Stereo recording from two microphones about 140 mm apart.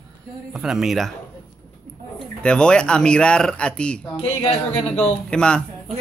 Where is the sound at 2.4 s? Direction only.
5° left (ahead or behind).